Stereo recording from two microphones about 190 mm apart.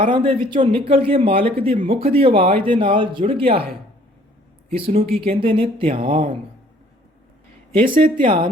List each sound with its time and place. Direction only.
0.0 s speech: 25° right (ahead or behind)
4.7 s speech: 30° right (ahead or behind)
8.0 s speech: 25° right (ahead or behind)